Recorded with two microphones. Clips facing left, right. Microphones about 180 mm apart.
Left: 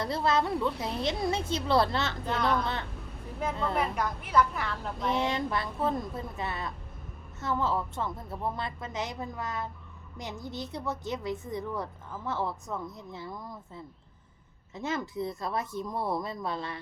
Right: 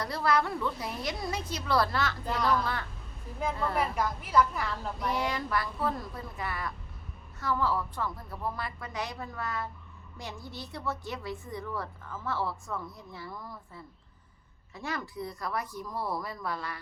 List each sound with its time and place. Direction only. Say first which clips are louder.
0.0 s a woman's voice: left 1 dB; 25° left (ahead or behind)
2.2 s a woman's voice: left 1 dB; centre (ahead or behind)
3.8 s a woman's voice: even; centre (ahead or behind)
4.9 s a woman's voice: left 3 dB; 25° left (ahead or behind)